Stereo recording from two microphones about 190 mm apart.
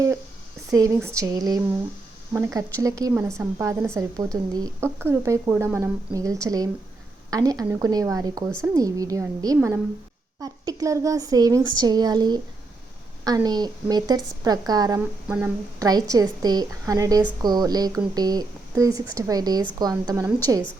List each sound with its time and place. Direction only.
0.7 s speech: 15° right (ahead or behind)